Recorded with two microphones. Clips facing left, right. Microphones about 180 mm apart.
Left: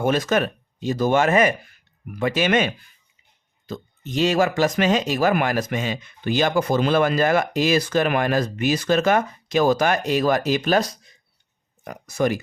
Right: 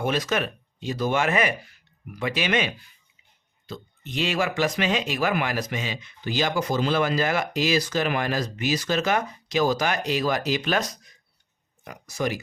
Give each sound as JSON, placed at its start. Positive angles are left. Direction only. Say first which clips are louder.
{"t": 0.0, "sound": "speech", "louder": "left 5 dB", "side_deg": 50}
{"t": 11.9, "sound": "speech", "louder": "left 6 dB", "side_deg": 55}